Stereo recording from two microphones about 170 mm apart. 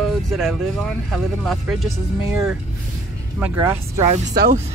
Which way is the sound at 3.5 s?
15° right (ahead or behind).